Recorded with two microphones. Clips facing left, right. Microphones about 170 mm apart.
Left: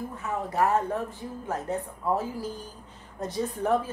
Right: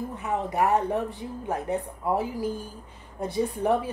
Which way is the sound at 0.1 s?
20° right (ahead or behind).